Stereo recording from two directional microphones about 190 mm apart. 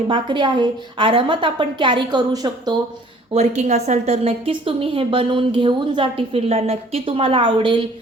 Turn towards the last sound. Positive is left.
turn(degrees=-25)  # may be behind; listen again after turning